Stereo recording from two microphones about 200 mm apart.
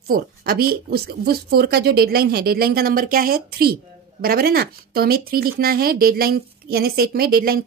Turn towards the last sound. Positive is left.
turn(degrees=-50)  # may be behind; listen again after turning